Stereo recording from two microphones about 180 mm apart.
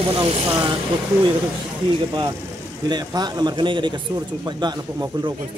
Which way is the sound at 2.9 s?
20° right (ahead or behind).